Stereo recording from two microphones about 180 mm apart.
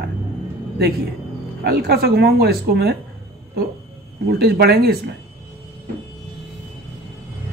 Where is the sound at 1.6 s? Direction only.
60° right (ahead or behind).